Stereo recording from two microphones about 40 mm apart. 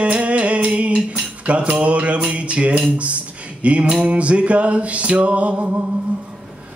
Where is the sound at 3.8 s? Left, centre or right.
Right.